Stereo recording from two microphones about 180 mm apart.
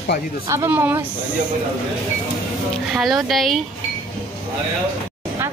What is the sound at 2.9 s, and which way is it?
Speech, centre (ahead or behind).